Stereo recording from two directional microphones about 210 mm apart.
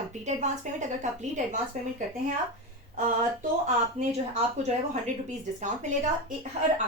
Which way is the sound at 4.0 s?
35° right (ahead or behind).